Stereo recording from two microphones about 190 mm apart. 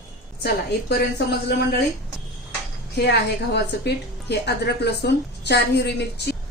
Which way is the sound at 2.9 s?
60° left (ahead or behind).